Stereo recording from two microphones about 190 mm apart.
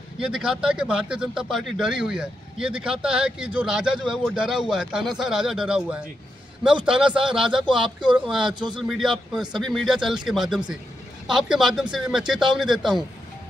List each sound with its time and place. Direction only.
0.2 s speech: 5° right (ahead or behind)
8.5 s speech: 25° right (ahead or behind)
8.8 s speech: centre (ahead or behind)